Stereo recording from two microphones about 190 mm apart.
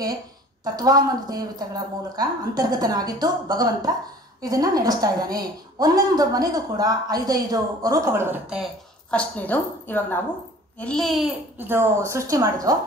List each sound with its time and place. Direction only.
0.7 s a woman's voice: 20° right (ahead or behind)
9.1 s a woman's voice: 5° left (ahead or behind)
11.5 s a woman's voice: 10° right (ahead or behind)